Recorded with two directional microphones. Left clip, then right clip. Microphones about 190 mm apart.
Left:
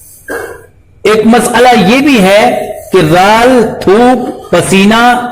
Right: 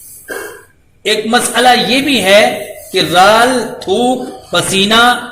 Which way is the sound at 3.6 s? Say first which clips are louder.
Left 8 dB; 25° left (ahead or behind).